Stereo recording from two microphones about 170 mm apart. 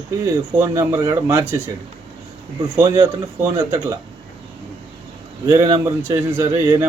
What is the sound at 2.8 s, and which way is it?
Speech, 20° right (ahead or behind).